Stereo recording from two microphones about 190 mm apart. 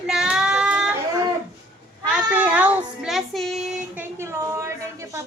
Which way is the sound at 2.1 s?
5° right (ahead or behind).